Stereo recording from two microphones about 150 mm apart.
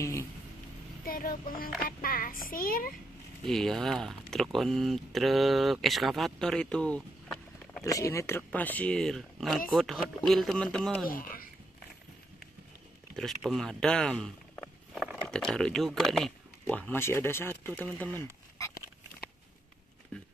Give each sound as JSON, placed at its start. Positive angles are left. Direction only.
{"t": 0.0, "sound": "vehicle", "side_deg": 20}
{"t": 1.0, "sound": "speech", "side_deg": 70}
{"t": 3.4, "sound": "speech", "side_deg": 5}
{"t": 7.8, "sound": "speech", "side_deg": 20}
{"t": 11.1, "sound": "speech", "side_deg": 70}
{"t": 13.1, "sound": "speech", "side_deg": 0}
{"t": 20.1, "sound": "speech", "side_deg": 5}